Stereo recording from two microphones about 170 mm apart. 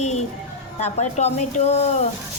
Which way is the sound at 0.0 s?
40° left (ahead or behind).